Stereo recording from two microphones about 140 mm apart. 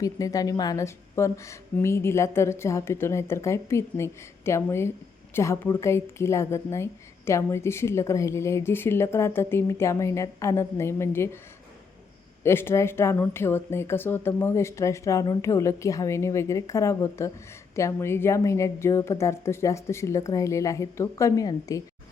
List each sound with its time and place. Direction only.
0.0 s a woman's voice: 25° left (ahead or behind)
12.4 s a woman's voice: 15° left (ahead or behind)